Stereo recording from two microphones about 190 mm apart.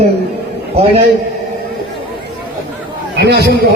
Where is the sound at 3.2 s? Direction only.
60° right (ahead or behind).